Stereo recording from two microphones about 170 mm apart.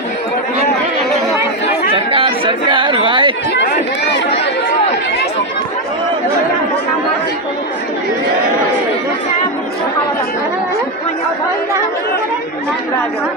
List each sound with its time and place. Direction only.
1.9 s chatter: 35° right (ahead or behind)
3.5 s chatter: 85° left